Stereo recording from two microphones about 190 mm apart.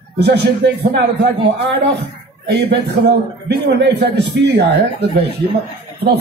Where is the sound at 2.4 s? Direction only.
60° right (ahead or behind).